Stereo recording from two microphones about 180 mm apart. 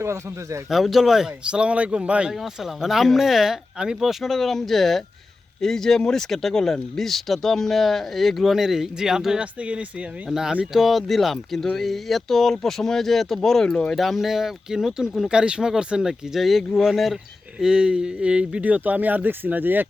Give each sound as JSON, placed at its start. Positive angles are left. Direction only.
{"t": 0.0, "sound": "speech", "side_deg": -15}
{"t": 0.7, "sound": "speech", "side_deg": 0}